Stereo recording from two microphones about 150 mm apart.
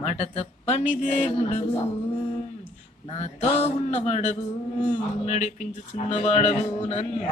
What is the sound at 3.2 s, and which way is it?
Speech, 45° left (ahead or behind).